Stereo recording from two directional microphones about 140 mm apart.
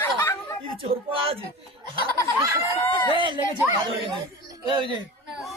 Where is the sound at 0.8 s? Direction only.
40° right (ahead or behind).